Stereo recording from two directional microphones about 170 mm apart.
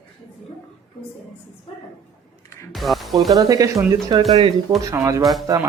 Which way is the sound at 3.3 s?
20° right (ahead or behind).